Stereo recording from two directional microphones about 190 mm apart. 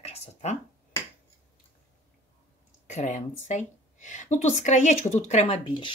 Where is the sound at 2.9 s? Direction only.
40° left (ahead or behind).